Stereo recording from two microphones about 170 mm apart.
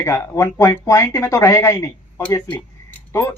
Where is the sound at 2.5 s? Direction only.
15° left (ahead or behind).